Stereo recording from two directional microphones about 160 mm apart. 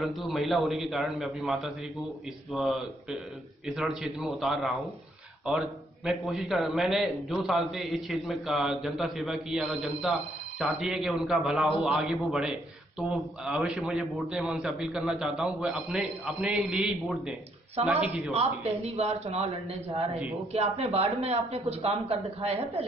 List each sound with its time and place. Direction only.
0.0 s a man's voice: centre (ahead or behind)
18.3 s a man's voice: 40° right (ahead or behind)
20.5 s a man's voice: 40° right (ahead or behind)